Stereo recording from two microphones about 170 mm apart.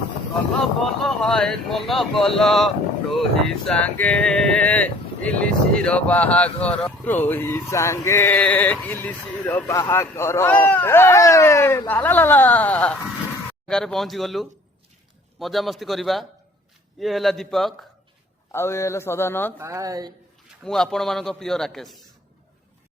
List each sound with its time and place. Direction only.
0.6 s speech: centre (ahead or behind)
18.5 s speech: 15° left (ahead or behind)
19.5 s speech: 15° right (ahead or behind)
20.7 s speech: 5° left (ahead or behind)